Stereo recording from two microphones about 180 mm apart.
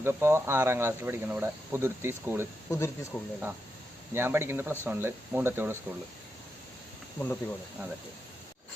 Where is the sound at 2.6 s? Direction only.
15° left (ahead or behind).